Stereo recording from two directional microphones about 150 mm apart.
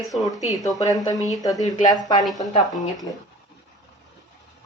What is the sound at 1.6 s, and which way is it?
Speech, 55° left (ahead or behind).